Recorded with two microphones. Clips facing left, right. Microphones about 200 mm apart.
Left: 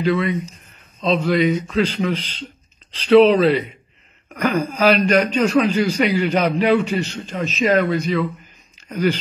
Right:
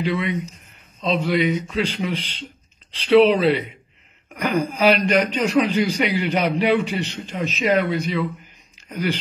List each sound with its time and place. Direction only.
0.0 s a man's voice: 15° right (ahead or behind)